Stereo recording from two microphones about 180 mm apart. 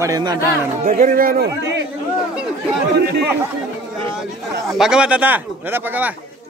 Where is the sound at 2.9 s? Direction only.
65° right (ahead or behind).